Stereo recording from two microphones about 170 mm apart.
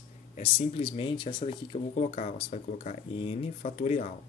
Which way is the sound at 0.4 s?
35° left (ahead or behind).